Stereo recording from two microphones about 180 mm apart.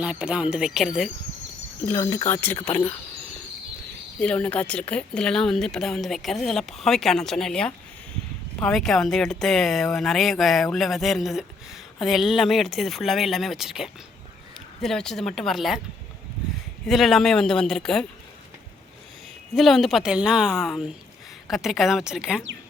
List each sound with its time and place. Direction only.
0.0 s speech: 5° right (ahead or behind)
1.8 s speech: 15° left (ahead or behind)
4.2 s speech: 5° left (ahead or behind)
16.8 s speech: centre (ahead or behind)
19.5 s speech: centre (ahead or behind)